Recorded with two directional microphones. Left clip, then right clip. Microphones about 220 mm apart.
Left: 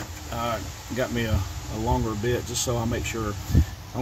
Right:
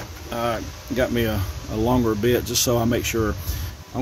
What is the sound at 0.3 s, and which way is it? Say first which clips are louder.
Speech: right 4 dB; 55° right (ahead or behind).